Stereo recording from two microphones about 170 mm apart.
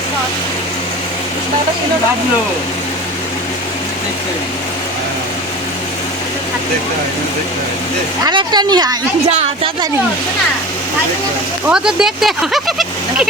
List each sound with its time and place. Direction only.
8.2 s speech: 25° right (ahead or behind)
11.7 s speech: 5° right (ahead or behind)